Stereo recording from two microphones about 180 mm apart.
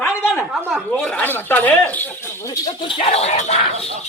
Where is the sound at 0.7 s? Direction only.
5° left (ahead or behind).